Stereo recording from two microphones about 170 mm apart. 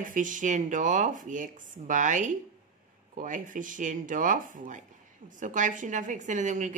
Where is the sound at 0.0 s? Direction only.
50° right (ahead or behind).